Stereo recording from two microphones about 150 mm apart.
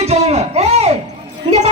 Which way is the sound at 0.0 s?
45° right (ahead or behind).